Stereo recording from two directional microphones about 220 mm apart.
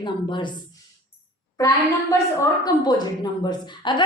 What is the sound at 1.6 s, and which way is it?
A woman's voice, 15° left (ahead or behind).